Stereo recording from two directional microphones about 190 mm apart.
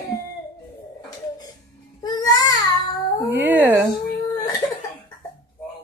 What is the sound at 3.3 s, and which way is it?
Speech, 10° right (ahead or behind).